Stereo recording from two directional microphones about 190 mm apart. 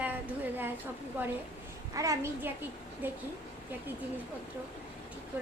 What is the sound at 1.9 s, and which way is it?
Speech, 15° right (ahead or behind).